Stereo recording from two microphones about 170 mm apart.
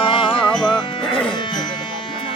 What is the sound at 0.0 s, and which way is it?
Music, 30° left (ahead or behind).